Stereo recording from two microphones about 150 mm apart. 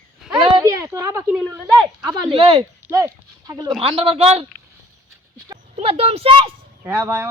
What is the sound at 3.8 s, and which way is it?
Speech, 40° right (ahead or behind).